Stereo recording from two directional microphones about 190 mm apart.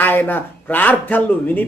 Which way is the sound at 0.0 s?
10° left (ahead or behind).